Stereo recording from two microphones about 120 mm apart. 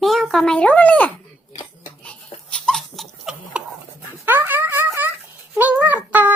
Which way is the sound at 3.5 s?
10° right (ahead or behind).